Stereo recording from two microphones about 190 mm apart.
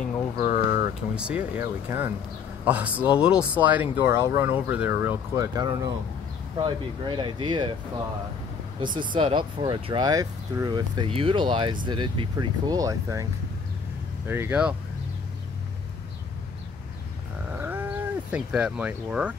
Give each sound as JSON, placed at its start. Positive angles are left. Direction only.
{"t": 0.4, "sound": "a sound", "side_deg": 50}
{"t": 1.1, "sound": "speech", "side_deg": -5}
{"t": 8.8, "sound": "speech", "side_deg": -25}
{"t": 17.6, "sound": "livestock", "side_deg": -10}